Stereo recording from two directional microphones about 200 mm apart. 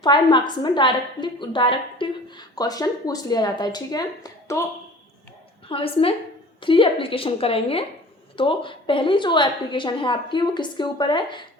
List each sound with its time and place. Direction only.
0.0 s a woman's voice: 25° left (ahead or behind)
5.6 s a woman's voice: 25° left (ahead or behind)